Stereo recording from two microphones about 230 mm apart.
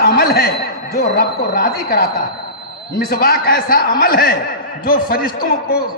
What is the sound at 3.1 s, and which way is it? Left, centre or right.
A man's voice, left.